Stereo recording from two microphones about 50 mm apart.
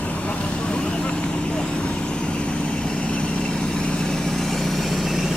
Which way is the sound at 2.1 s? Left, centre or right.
Left.